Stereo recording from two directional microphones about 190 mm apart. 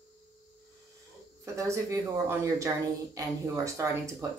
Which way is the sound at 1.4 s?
15° right (ahead or behind).